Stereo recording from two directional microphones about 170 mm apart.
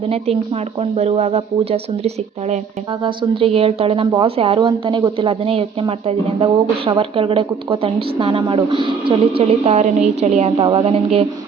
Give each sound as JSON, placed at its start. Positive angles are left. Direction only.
{"t": 0.1, "sound": "speech", "side_deg": -35}